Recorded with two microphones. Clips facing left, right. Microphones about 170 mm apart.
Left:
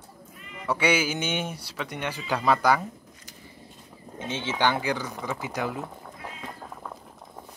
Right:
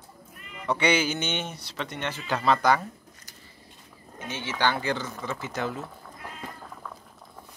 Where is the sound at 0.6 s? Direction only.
5° left (ahead or behind).